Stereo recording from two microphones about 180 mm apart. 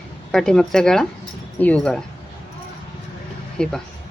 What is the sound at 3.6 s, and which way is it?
Speech, 5° left (ahead or behind).